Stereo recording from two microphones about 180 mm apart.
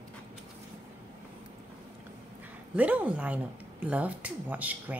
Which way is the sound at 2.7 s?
10° right (ahead or behind).